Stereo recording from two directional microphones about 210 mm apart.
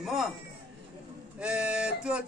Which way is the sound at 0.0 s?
Centre (ahead or behind).